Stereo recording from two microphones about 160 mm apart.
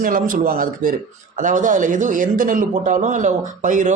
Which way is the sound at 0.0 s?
55° right (ahead or behind).